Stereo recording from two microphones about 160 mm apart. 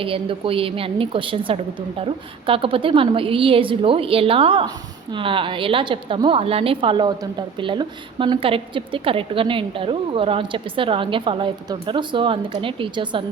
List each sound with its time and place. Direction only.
0.0 s a woman's voice: 35° right (ahead or behind)